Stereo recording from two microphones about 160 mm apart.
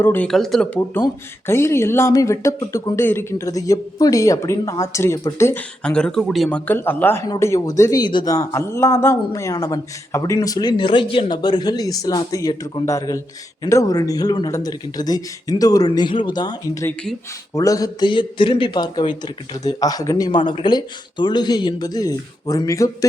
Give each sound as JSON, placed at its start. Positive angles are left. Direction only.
{"t": 0.0, "sound": "speech", "side_deg": 15}
{"t": 0.3, "sound": "speech", "side_deg": 0}
{"t": 5.8, "sound": "speech", "side_deg": 5}
{"t": 16.8, "sound": "speech", "side_deg": 5}
{"t": 17.5, "sound": "speech", "side_deg": 20}